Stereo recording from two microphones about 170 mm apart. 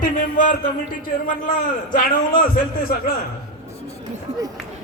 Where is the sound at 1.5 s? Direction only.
55° left (ahead or behind).